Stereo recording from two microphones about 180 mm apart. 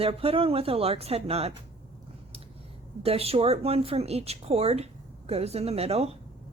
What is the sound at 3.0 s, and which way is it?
Speech, 35° right (ahead or behind).